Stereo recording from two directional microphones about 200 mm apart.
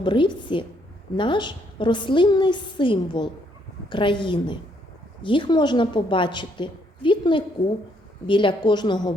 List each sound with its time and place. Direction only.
0.0 s a woman's voice: 25° left (ahead or behind)